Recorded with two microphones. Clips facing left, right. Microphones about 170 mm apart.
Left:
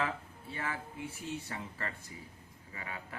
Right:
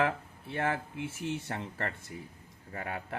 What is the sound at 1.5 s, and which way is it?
Speech, 60° right (ahead or behind).